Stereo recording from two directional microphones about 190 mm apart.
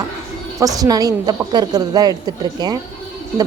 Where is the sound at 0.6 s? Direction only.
20° right (ahead or behind).